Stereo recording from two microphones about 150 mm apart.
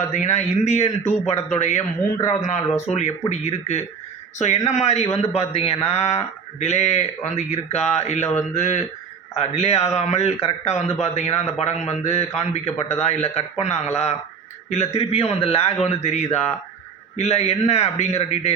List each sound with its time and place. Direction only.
0.1 s speech: 50° left (ahead or behind)